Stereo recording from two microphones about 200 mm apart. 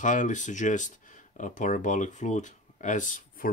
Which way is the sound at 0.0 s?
40° left (ahead or behind).